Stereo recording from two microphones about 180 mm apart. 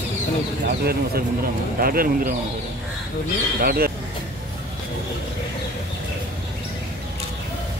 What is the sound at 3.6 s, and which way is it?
Speech, 55° right (ahead or behind).